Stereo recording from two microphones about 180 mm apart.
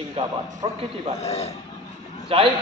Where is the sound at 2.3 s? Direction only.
30° right (ahead or behind).